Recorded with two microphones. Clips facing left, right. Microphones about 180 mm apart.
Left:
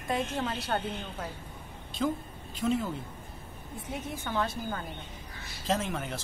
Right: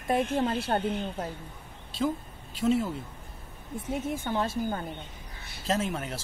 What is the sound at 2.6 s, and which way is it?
Speech, 5° right (ahead or behind).